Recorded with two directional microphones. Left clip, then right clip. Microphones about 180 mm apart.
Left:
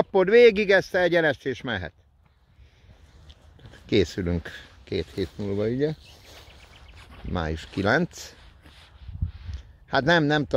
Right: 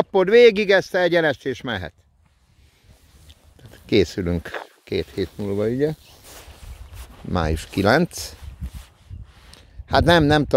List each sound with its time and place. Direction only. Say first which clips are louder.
0.0 s speech: right 3 dB; 20° right (ahead or behind)
3.3 s speech: right 3 dB; 35° right (ahead or behind)
9.5 s a sound: right 6 dB; 35° right (ahead or behind)